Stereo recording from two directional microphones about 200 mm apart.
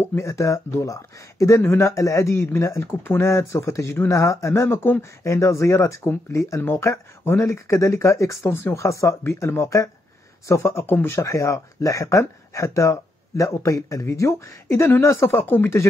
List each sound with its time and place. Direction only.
0.0 s speech: 15° left (ahead or behind)